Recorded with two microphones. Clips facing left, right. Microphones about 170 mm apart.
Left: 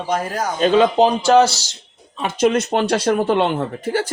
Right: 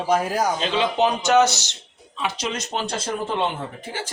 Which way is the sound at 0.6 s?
45° left (ahead or behind).